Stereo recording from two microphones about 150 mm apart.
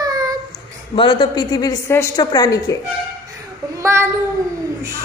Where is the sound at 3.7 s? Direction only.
20° right (ahead or behind).